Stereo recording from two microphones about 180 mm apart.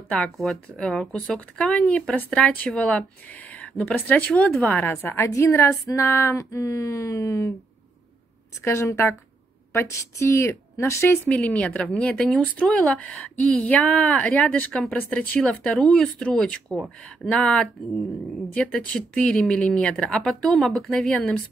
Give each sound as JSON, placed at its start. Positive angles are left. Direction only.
{"t": 0.1, "sound": "a woman's voice", "side_deg": 5}
{"t": 8.6, "sound": "a woman's voice", "side_deg": 15}